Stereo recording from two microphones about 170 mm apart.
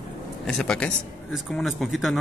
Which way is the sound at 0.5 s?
5° left (ahead or behind).